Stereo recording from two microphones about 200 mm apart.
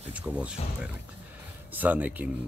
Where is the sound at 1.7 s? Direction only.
10° right (ahead or behind).